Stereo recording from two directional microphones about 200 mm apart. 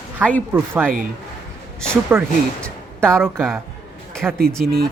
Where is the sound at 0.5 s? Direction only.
10° right (ahead or behind).